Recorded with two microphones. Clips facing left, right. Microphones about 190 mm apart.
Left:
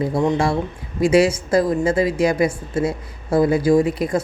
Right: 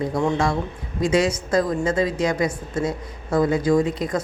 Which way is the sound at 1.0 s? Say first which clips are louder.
Left 5 dB; 30° left (ahead or behind).